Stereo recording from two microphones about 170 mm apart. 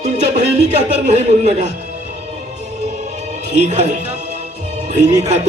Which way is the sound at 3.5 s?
40° right (ahead or behind).